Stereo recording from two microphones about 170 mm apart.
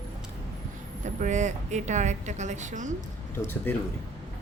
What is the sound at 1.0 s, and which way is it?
A woman's voice, 45° right (ahead or behind).